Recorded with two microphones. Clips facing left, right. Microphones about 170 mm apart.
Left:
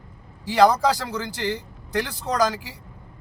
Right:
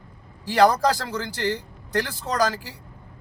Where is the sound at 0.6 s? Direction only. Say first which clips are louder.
Left 1 dB; 15° left (ahead or behind).